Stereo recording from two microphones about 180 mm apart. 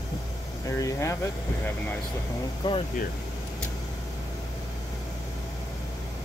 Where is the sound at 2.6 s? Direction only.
25° left (ahead or behind).